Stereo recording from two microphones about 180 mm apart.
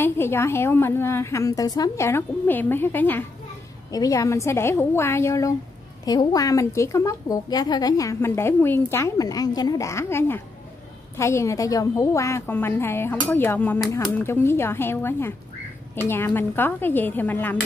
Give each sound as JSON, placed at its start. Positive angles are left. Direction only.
{"t": 0.0, "sound": "a woman's voice", "side_deg": 15}